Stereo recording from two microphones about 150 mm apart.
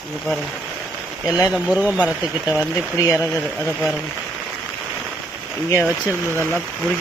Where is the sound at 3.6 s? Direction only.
Centre (ahead or behind).